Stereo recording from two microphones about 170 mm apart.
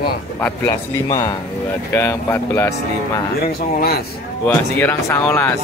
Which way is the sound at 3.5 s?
65° left (ahead or behind).